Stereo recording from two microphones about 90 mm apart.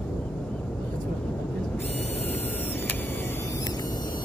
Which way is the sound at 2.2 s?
20° left (ahead or behind).